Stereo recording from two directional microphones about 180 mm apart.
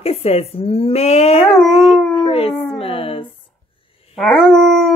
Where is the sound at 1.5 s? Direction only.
Centre (ahead or behind).